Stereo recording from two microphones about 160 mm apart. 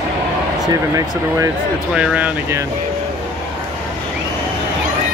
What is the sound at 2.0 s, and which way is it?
Speech, 10° right (ahead or behind).